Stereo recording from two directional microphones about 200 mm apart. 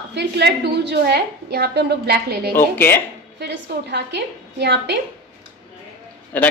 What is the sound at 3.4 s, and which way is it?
A woman's voice, 60° right (ahead or behind).